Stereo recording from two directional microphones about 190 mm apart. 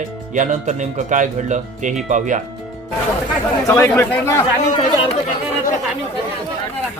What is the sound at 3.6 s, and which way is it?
Speech, 15° left (ahead or behind).